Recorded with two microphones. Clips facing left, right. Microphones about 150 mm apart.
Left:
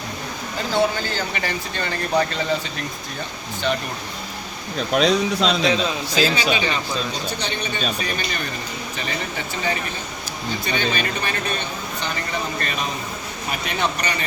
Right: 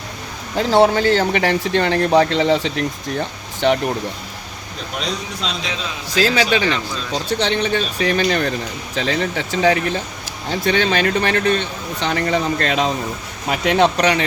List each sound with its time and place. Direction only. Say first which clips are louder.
0.5 s speech: right 7 dB; 75° right (ahead or behind)
4.9 s speech: left 8 dB; 75° left (ahead or behind)
6.2 s speech: right 6 dB; 85° right